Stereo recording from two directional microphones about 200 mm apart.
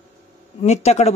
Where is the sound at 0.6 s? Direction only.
30° left (ahead or behind).